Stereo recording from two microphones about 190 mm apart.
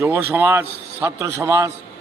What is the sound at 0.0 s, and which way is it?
A man's voice, 10° right (ahead or behind).